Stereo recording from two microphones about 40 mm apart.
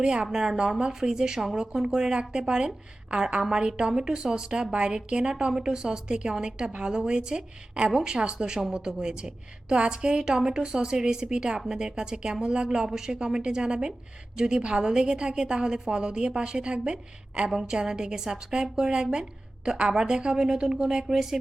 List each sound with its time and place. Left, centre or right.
0.0 s a woman's voice: right